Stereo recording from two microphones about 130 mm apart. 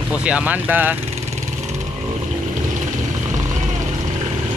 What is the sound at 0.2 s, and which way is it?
Speech, 10° right (ahead or behind).